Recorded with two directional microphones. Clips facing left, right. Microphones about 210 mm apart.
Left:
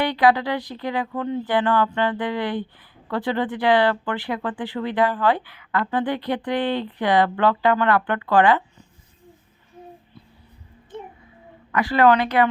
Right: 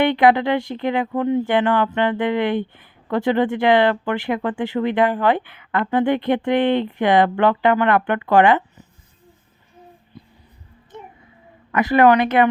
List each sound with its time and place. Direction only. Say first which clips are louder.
0.0 s speech: right 4 dB; 25° right (ahead or behind)
11.7 s speech: right 3 dB; 20° right (ahead or behind)